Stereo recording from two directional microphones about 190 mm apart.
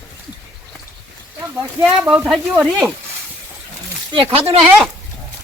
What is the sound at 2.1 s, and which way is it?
Speech, 5° right (ahead or behind).